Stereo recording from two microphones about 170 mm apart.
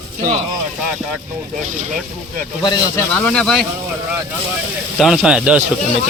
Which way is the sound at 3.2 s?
5° left (ahead or behind).